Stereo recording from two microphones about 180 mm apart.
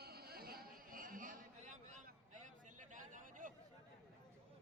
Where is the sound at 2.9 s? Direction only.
45° right (ahead or behind).